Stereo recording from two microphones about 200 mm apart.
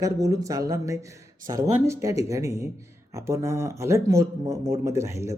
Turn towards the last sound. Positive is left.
turn(degrees=-15)  # may be behind; listen again after turning